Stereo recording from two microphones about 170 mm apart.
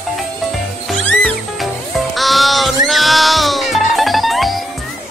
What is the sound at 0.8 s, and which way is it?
Music, centre (ahead or behind).